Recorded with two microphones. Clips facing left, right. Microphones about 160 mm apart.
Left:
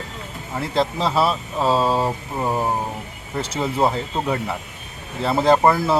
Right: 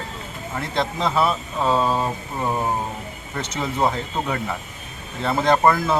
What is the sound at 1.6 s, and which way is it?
Speech, 30° left (ahead or behind).